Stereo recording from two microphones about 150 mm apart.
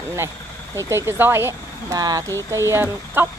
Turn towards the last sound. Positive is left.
turn(degrees=-15)  # may be behind; listen again after turning